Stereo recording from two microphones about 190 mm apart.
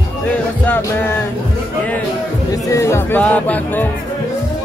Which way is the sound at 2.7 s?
15° left (ahead or behind).